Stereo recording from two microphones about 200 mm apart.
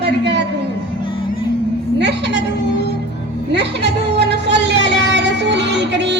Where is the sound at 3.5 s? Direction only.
60° right (ahead or behind).